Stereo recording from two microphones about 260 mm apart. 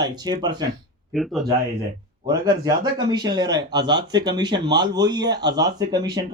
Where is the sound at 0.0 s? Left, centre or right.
Centre.